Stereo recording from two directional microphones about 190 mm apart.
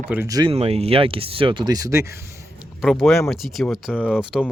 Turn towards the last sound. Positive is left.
turn(degrees=-5)  # may be behind; listen again after turning